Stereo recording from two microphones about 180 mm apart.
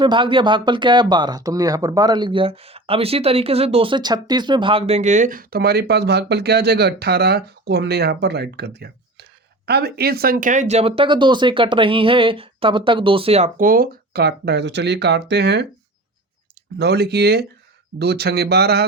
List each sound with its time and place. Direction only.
0.0 s speech: 25° right (ahead or behind)
13.6 s speech: 50° right (ahead or behind); by 15.6 s 70° right (ahead or behind)
16.7 s speech: 65° right (ahead or behind)